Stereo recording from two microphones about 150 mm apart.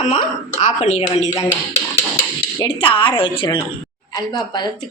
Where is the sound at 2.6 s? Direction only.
35° left (ahead or behind).